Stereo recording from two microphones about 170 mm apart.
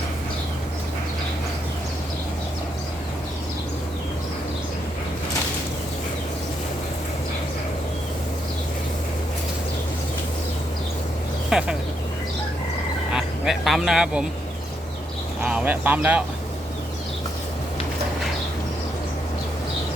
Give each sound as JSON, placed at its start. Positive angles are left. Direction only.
{"t": 11.4, "sound": "a sound", "side_deg": -5}
{"t": 13.1, "sound": "speech", "side_deg": 0}
{"t": 15.4, "sound": "speech", "side_deg": -10}